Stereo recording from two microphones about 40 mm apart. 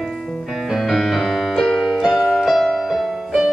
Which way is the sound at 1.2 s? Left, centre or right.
Centre.